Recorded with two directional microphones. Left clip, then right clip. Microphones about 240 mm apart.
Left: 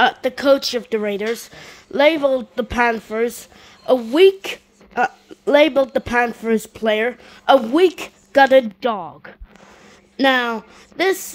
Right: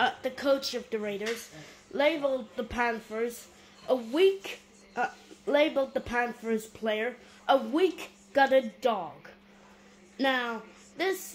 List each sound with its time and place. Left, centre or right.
0.0 s a woman's voice: left
10.1 s a woman's voice: left